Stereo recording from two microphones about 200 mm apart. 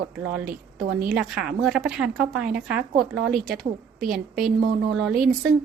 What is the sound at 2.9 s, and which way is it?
Speech, 55° right (ahead or behind).